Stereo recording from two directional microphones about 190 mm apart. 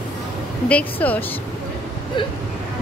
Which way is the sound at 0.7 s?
10° left (ahead or behind).